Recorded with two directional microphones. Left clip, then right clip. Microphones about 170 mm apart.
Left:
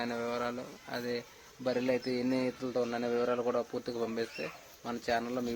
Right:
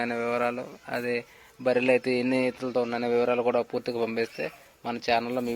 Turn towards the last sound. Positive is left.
turn(degrees=-30)  # may be behind; listen again after turning